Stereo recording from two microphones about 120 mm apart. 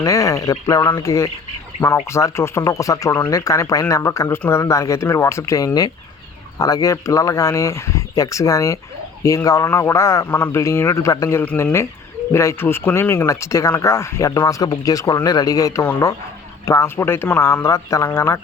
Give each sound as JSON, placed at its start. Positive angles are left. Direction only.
{"t": 0.0, "sound": "speech", "side_deg": 25}